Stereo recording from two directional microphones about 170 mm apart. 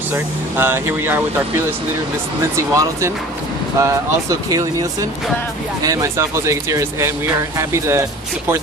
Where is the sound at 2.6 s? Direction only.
15° right (ahead or behind).